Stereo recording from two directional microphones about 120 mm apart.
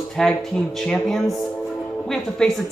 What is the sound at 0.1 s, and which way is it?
Speech, 5° left (ahead or behind).